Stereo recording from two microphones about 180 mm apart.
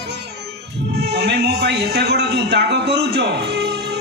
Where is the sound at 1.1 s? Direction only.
70° right (ahead or behind).